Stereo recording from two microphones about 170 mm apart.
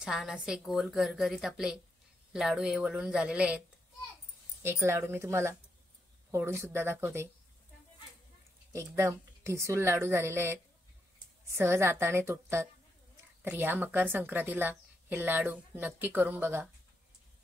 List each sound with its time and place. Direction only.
0.0 s a woman's voice: 5° right (ahead or behind)
4.6 s a woman's voice: 15° right (ahead or behind)
8.7 s a woman's voice: 15° right (ahead or behind)